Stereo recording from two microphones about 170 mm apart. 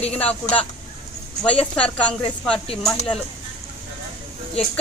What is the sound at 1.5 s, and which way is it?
A woman's voice, 5° left (ahead or behind).